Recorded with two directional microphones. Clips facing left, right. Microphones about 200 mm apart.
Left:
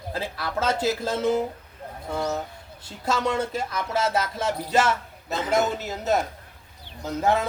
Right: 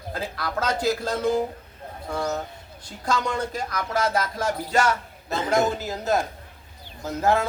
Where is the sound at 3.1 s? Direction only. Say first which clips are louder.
Left 2 dB; 25° left (ahead or behind).